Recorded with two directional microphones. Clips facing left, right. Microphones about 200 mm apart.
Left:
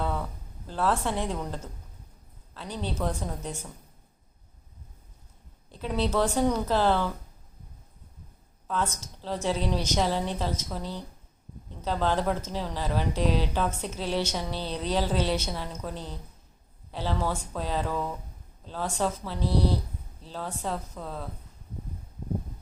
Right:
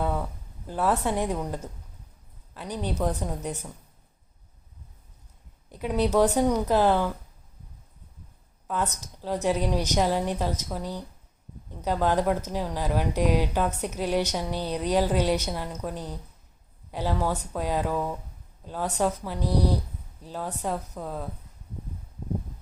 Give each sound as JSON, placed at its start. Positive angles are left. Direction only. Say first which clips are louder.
{"t": 0.0, "sound": "a sound", "louder": "right 3 dB", "side_deg": -10}
{"t": 0.7, "sound": "a woman's voice", "louder": "right 2 dB", "side_deg": -10}
{"t": 5.7, "sound": "a woman's voice", "louder": "right 4 dB", "side_deg": -15}
{"t": 8.6, "sound": "a woman's voice", "louder": "right 1 dB", "side_deg": -10}